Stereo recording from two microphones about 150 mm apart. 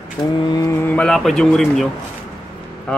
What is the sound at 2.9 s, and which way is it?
Speech, 5° left (ahead or behind).